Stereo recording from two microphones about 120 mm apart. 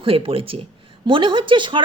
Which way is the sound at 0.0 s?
50° right (ahead or behind).